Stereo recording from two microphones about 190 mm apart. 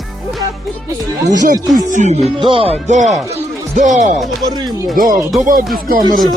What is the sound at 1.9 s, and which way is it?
Speech, 40° right (ahead or behind).